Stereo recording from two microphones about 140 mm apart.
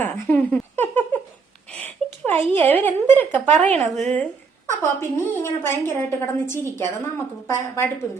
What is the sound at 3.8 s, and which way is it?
Speech, 55° right (ahead or behind).